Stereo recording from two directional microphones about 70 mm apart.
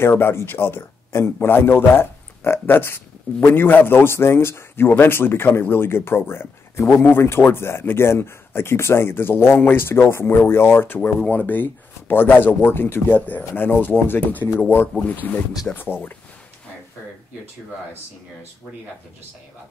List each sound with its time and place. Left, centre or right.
0.0 s a man's voice: left